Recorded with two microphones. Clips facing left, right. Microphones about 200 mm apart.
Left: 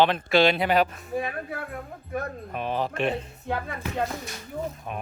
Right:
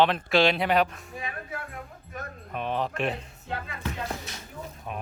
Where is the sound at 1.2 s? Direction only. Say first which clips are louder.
Left 5 dB; 55° left (ahead or behind).